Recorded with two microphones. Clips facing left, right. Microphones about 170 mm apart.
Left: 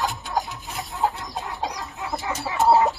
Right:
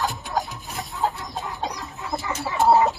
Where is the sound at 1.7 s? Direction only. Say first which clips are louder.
Left 2 dB; 80° left.